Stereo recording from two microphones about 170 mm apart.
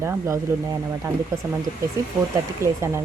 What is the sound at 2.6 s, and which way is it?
Speech, 15° right (ahead or behind).